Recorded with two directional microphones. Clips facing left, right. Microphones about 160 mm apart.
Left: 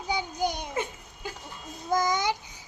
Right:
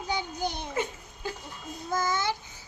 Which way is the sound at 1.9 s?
15° left (ahead or behind).